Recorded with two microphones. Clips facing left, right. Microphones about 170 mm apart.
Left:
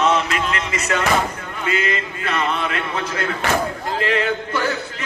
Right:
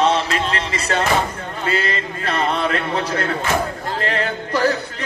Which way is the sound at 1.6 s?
35° right (ahead or behind).